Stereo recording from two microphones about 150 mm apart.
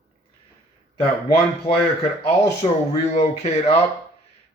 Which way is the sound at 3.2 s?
45° left (ahead or behind).